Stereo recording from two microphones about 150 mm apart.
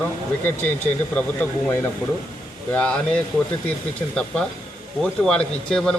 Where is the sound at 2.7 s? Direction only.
5° left (ahead or behind).